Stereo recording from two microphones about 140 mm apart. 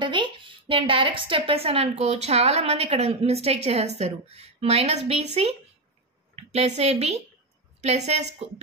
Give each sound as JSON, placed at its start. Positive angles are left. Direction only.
{"t": 0.0, "sound": "a woman's voice", "side_deg": -35}